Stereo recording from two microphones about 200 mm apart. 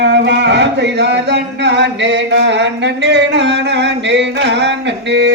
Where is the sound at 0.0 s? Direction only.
60° right (ahead or behind).